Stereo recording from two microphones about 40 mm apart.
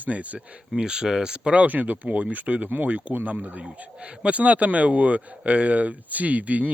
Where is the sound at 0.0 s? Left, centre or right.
Right.